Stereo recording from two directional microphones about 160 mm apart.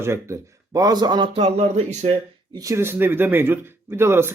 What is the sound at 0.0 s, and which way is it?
Speech, 15° right (ahead or behind).